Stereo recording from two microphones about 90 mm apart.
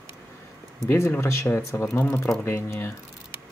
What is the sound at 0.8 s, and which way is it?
Speech, 25° left (ahead or behind).